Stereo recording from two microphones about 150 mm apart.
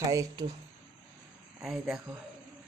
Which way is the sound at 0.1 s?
20° right (ahead or behind).